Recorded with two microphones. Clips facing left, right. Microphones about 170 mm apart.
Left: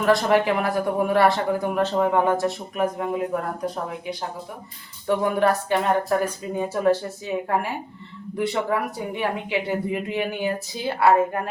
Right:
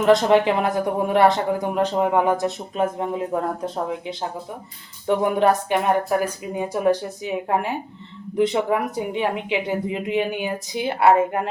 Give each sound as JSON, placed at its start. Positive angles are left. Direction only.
{"t": 0.0, "sound": "speech", "side_deg": -20}
{"t": 5.0, "sound": "speech", "side_deg": -20}